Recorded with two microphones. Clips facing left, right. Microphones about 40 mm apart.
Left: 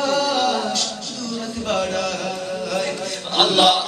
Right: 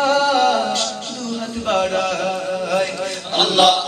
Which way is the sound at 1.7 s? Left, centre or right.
Right.